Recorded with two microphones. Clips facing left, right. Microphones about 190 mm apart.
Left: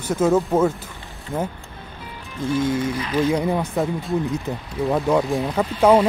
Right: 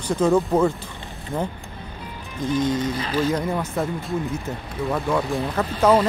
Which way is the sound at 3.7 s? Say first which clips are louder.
Left 3 dB; centre (ahead or behind).